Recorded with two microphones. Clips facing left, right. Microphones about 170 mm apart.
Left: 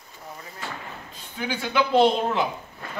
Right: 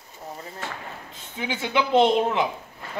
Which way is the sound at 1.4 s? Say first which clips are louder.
Even; 20° right (ahead or behind).